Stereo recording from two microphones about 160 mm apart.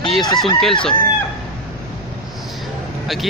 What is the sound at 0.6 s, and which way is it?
Speech, 5° left (ahead or behind).